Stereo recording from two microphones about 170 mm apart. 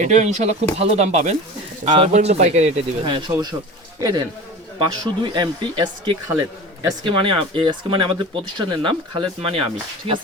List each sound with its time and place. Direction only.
0.0 s speech: 45° right (ahead or behind)
3.1 s speech: 25° right (ahead or behind)
4.8 s speech: 25° right (ahead or behind)